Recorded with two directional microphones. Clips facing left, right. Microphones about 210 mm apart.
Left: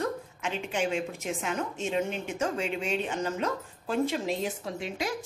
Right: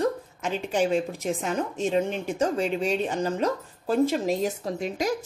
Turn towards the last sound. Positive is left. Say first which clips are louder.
# right 6 dB
turn(degrees=-40)  # may be behind; listen again after turning